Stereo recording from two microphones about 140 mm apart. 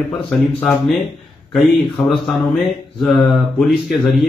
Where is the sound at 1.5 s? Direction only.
Centre (ahead or behind).